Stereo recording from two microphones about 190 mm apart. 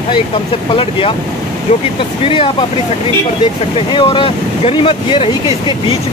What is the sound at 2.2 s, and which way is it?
Speech, 30° left (ahead or behind).